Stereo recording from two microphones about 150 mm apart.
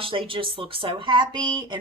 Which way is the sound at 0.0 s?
35° right (ahead or behind).